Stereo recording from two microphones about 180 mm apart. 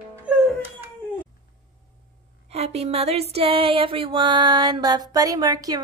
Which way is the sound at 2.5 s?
35° right (ahead or behind).